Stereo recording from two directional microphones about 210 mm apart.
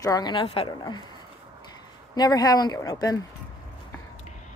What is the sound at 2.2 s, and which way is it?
A woman's voice, 20° left (ahead or behind).